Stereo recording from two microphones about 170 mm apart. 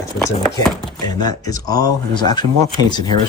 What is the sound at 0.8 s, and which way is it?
Chopping, centre (ahead or behind).